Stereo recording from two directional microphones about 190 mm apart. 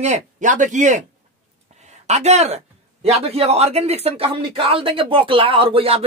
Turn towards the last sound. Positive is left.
turn(degrees=-30)  # may be behind; listen again after turning